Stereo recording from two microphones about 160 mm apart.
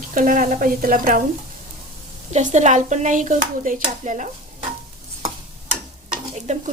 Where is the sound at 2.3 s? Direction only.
50° right (ahead or behind).